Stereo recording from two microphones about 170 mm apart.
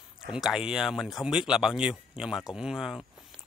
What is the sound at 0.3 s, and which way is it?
Speech, 5° right (ahead or behind).